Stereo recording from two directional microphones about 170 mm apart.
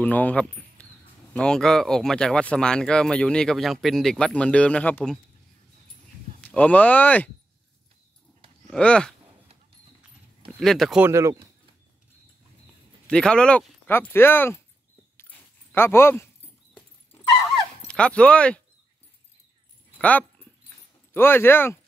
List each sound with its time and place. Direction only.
0.0 s speech: 10° left (ahead or behind)
6.4 s speech: 10° left (ahead or behind)
8.6 s speech: 5° left (ahead or behind)
10.6 s speech: centre (ahead or behind)
11.0 s speech: 15° right (ahead or behind)
13.0 s speech: 5° left (ahead or behind)
15.1 s dog: 15° left (ahead or behind)
17.5 s dog: 5° left (ahead or behind)
20.0 s speech: 10° left (ahead or behind)